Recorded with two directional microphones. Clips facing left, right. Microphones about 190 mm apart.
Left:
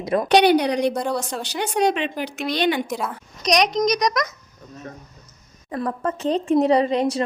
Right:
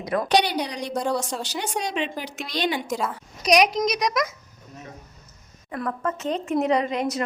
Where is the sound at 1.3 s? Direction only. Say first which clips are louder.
Left 3 dB; 60° left (ahead or behind).